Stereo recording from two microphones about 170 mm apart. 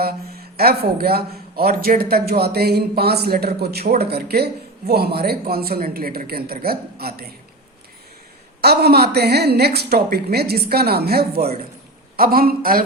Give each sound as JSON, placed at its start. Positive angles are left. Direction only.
{"t": 0.0, "sound": "a man's voice", "side_deg": -65}
{"t": 8.6, "sound": "a man's voice", "side_deg": -70}